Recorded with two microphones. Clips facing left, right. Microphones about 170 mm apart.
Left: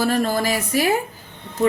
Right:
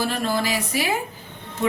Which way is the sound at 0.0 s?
45° left (ahead or behind).